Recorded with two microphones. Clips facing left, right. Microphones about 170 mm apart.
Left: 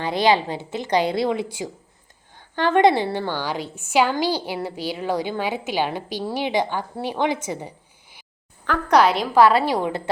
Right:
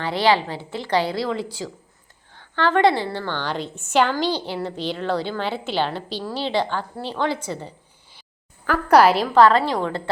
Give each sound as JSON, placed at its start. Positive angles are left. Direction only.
{"t": 0.0, "sound": "a woman's voice", "side_deg": 15}
{"t": 8.6, "sound": "a woman's voice", "side_deg": -5}
{"t": 9.2, "sound": "a woman's voice", "side_deg": 10}